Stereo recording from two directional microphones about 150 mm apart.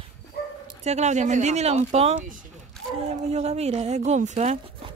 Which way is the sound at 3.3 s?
45° right (ahead or behind).